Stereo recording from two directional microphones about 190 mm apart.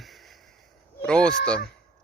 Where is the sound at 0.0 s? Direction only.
Centre (ahead or behind).